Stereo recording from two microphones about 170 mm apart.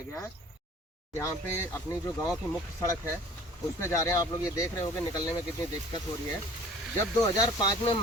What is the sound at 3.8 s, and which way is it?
Speech, 20° left (ahead or behind).